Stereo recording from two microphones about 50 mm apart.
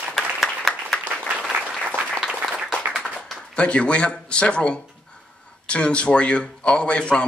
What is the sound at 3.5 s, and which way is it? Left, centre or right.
A man's voice, left.